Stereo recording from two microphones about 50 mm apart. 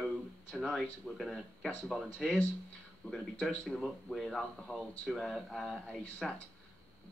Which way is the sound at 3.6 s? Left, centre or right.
Centre.